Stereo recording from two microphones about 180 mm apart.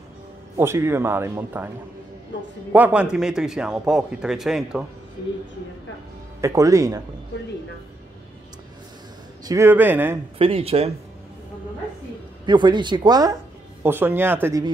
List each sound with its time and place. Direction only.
0.6 s speech: 15° right (ahead or behind)
2.7 s a man's voice: 10° right (ahead or behind)
6.4 s speech: 20° right (ahead or behind)
9.4 s speech: 20° right (ahead or behind)
10.4 s speech: 30° right (ahead or behind)
12.4 s speech: 25° right (ahead or behind)